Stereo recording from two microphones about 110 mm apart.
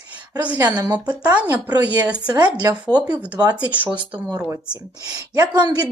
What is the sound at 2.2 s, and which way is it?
Speech, 40° right (ahead or behind).